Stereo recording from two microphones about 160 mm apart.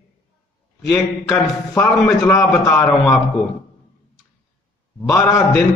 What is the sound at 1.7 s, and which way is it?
A man's voice, 15° left (ahead or behind).